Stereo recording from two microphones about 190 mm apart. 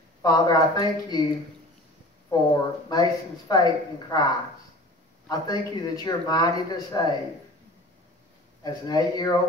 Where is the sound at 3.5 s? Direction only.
20° left (ahead or behind).